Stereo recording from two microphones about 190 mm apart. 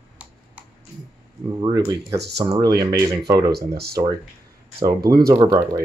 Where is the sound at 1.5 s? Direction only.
25° right (ahead or behind).